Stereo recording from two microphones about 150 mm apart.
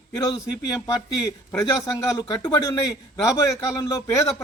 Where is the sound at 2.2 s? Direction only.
25° left (ahead or behind).